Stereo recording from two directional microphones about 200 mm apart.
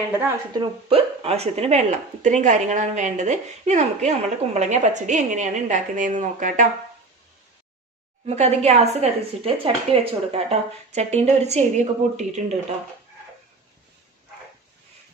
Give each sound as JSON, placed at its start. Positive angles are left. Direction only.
{"t": 0.5, "sound": "speech", "side_deg": -25}
{"t": 8.4, "sound": "speech", "side_deg": -35}